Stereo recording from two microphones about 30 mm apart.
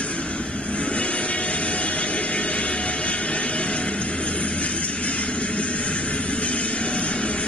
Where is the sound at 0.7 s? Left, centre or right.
Left.